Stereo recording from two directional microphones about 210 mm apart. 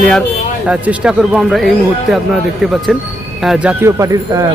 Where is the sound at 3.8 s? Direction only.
15° right (ahead or behind).